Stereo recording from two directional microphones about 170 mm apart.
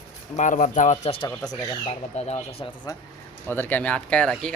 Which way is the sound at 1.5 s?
20° left (ahead or behind).